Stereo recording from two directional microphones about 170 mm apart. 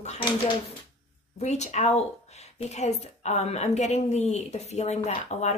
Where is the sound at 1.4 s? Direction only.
40° left (ahead or behind).